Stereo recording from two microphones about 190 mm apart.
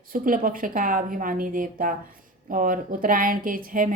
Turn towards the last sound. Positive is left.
turn(degrees=-45)  # may be behind; listen again after turning